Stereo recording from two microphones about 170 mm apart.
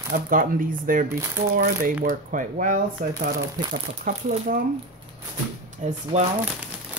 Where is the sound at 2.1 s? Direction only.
55° right (ahead or behind).